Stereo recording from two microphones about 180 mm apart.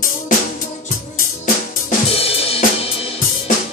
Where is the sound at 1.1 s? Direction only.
45° left (ahead or behind).